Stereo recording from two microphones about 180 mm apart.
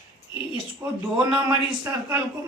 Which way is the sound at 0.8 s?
5° right (ahead or behind).